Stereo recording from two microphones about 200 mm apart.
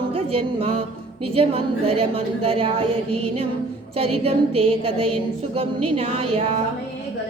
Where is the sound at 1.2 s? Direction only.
30° right (ahead or behind).